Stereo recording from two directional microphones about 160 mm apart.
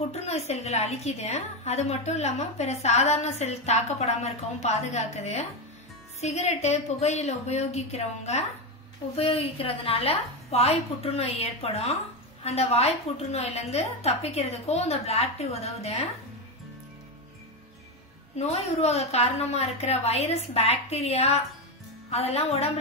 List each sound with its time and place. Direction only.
0.1 s a woman's voice: 40° left (ahead or behind)
18.3 s a woman's voice: 40° left (ahead or behind)